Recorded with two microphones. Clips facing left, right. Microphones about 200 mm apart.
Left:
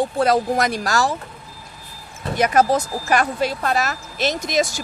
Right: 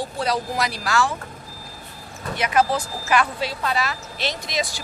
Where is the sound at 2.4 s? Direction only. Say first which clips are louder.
Left 4 dB; 40° left (ahead or behind).